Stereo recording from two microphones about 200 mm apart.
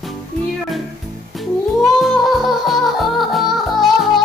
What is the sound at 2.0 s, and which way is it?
Music, centre (ahead or behind).